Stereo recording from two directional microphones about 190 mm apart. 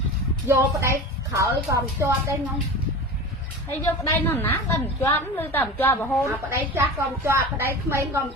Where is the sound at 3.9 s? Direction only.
10° left (ahead or behind).